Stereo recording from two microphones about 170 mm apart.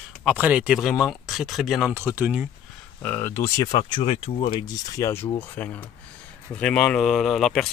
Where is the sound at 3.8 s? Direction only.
30° left (ahead or behind).